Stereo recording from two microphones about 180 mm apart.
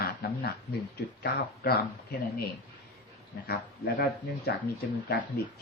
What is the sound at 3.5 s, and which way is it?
Speech, 60° left (ahead or behind).